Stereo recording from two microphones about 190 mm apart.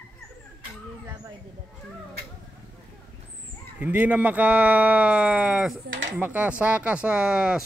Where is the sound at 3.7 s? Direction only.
10° right (ahead or behind).